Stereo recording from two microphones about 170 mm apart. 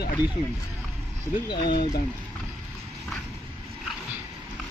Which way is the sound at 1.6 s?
65° left (ahead or behind).